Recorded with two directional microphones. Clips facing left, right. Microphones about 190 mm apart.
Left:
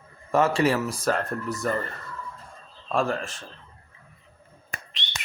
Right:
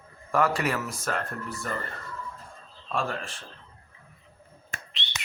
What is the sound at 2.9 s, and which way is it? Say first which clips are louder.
Speech: left 5 dB; 45° left (ahead or behind).